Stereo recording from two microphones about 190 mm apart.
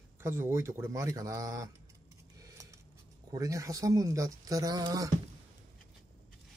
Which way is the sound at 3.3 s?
15° right (ahead or behind).